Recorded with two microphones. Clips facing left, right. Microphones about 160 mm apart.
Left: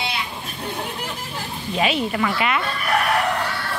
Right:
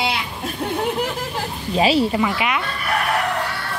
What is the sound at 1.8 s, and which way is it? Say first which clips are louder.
Speech: right 5 dB; 30° right (ahead or behind).